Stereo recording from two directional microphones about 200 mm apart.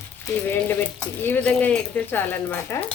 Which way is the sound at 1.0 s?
5° left (ahead or behind).